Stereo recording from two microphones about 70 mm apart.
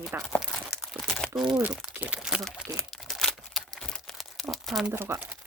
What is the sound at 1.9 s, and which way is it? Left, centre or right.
Crumpling, centre.